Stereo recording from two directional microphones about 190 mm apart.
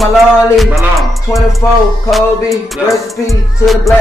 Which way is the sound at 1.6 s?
15° left (ahead or behind).